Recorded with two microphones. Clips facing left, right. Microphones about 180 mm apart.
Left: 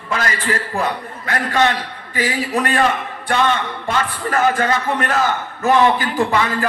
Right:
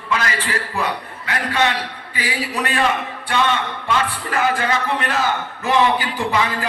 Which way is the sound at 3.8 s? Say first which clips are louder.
Left 1 dB; 45° left (ahead or behind).